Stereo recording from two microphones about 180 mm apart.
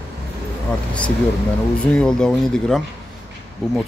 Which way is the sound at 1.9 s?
5° left (ahead or behind).